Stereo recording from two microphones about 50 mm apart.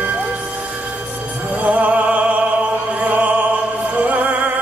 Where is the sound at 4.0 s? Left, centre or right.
Right.